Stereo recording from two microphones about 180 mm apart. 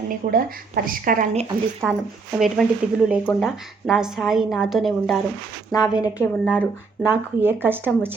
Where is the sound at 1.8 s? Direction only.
10° right (ahead or behind).